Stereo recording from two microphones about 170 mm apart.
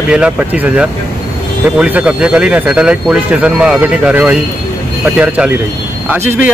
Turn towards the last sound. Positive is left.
turn(degrees=-10)  # may be behind; listen again after turning